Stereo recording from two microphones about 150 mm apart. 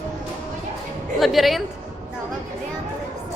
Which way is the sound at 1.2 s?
Centre (ahead or behind).